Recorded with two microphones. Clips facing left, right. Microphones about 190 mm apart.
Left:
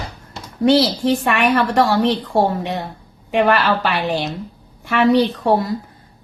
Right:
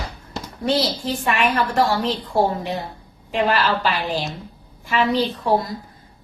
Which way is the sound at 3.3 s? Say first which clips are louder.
Left 4 dB; 65° left (ahead or behind).